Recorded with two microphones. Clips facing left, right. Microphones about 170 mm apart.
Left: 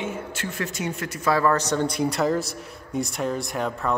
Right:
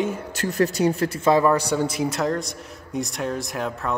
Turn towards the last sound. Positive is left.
turn(degrees=0)  # may be behind; listen again after turning